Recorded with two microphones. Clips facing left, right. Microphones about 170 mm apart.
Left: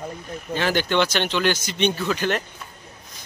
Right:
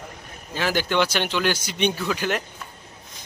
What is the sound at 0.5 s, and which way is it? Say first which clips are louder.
Speech: left 2 dB; 5° right (ahead or behind).